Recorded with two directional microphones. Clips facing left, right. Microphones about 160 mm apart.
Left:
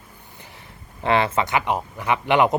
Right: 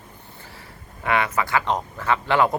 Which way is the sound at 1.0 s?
30° left (ahead or behind).